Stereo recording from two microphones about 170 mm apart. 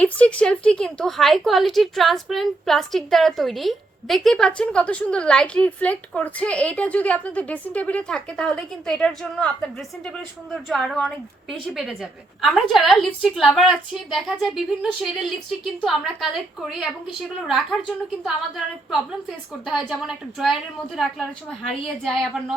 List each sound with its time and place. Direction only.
0.0 s a woman's voice: 5° left (ahead or behind)